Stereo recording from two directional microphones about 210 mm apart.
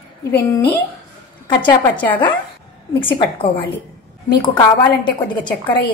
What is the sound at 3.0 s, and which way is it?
A woman's voice, 25° left (ahead or behind).